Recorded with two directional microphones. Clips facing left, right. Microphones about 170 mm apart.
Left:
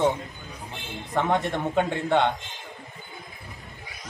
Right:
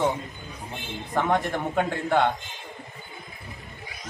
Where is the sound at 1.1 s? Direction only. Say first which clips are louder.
Even; centre (ahead or behind).